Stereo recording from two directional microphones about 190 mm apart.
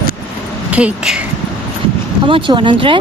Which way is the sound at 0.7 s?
5° right (ahead or behind).